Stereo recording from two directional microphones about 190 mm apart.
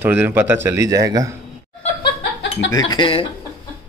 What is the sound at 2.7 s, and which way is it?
Speech, 20° left (ahead or behind).